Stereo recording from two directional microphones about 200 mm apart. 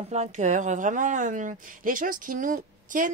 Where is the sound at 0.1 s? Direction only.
35° right (ahead or behind).